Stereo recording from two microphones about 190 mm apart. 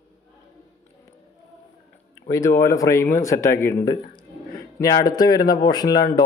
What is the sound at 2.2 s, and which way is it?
A man's voice, 15° left (ahead or behind).